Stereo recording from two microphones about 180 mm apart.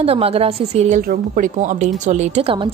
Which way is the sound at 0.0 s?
35° right (ahead or behind).